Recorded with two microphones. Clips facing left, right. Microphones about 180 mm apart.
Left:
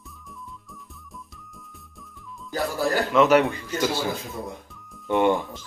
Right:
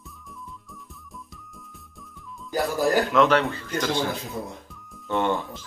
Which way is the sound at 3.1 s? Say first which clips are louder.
Left 2 dB; 5° left (ahead or behind).